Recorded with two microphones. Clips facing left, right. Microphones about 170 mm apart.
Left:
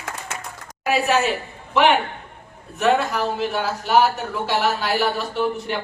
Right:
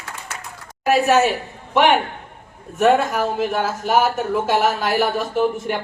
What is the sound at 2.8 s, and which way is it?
A woman's voice, 45° right (ahead or behind).